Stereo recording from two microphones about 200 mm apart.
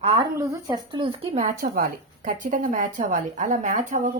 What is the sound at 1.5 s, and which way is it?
A woman's voice, 45° right (ahead or behind).